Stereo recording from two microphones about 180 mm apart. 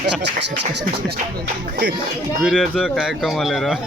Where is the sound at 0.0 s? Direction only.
75° right (ahead or behind).